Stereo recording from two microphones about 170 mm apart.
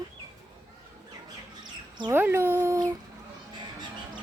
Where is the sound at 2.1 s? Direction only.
15° right (ahead or behind).